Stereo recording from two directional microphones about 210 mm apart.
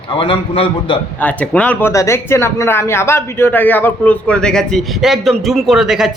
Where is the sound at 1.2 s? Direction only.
5° left (ahead or behind).